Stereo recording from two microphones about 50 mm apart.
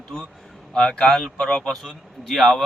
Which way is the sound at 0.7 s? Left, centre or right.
Centre.